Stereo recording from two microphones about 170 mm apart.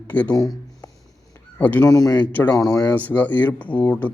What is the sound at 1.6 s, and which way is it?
Speech, 10° left (ahead or behind).